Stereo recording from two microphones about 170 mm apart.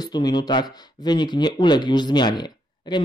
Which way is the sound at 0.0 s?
25° left (ahead or behind).